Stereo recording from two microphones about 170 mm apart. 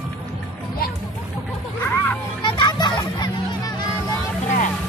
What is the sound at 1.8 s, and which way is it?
Music, 15° left (ahead or behind).